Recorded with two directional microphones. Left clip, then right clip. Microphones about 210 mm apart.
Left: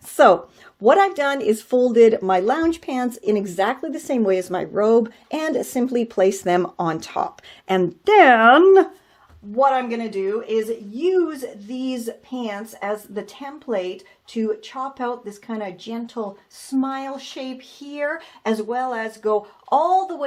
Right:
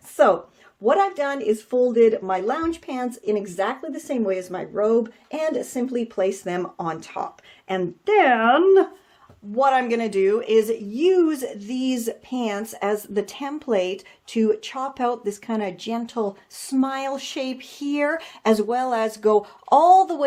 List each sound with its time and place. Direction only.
0.2 s speech: 45° left (ahead or behind)
9.6 s speech: 15° right (ahead or behind)
9.8 s speech: 35° right (ahead or behind); by 20.2 s 50° right (ahead or behind)